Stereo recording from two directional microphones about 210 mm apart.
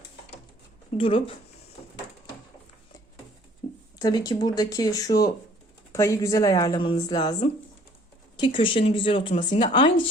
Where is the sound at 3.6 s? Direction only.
55° left (ahead or behind).